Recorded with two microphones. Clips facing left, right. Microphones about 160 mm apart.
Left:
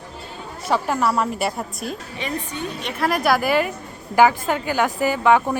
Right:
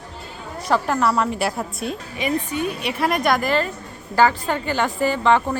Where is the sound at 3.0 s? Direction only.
Centre (ahead or behind).